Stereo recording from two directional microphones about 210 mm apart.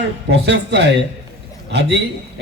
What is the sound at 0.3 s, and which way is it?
Speech, 55° right (ahead or behind).